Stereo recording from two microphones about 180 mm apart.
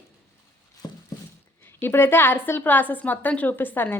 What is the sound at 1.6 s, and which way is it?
A woman's voice, 10° left (ahead or behind).